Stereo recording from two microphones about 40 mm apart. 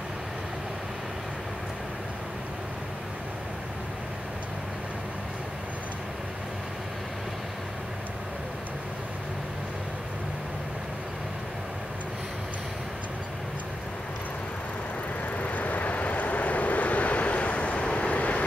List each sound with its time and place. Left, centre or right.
15.3 s vehicle: left